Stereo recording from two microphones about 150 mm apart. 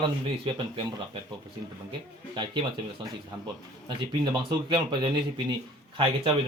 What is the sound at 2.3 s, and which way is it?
Speech, 30° right (ahead or behind).